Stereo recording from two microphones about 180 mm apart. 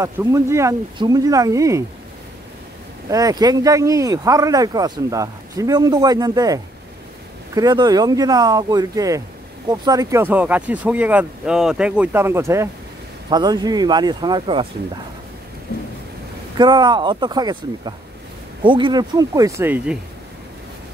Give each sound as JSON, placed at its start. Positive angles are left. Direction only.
{"t": 0.0, "sound": "speech", "side_deg": -15}
{"t": 3.1, "sound": "speech", "side_deg": -20}
{"t": 16.5, "sound": "speech", "side_deg": -25}